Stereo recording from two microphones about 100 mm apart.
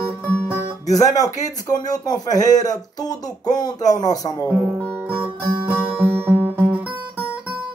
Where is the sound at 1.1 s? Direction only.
40° left (ahead or behind).